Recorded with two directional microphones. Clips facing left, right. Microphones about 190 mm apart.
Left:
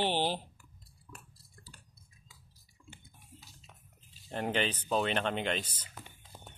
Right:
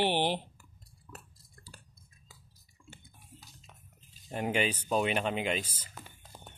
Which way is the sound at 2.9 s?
45° right (ahead or behind).